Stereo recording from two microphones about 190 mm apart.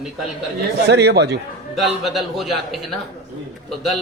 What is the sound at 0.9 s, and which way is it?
Speech, 60° right (ahead or behind).